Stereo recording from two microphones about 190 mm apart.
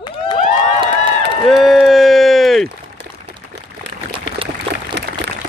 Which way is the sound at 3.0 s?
65° right (ahead or behind).